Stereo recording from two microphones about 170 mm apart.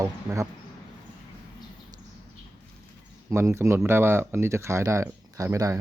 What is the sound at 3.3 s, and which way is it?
Speech, 15° right (ahead or behind).